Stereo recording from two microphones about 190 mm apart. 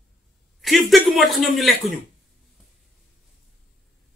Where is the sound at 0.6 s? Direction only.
Centre (ahead or behind).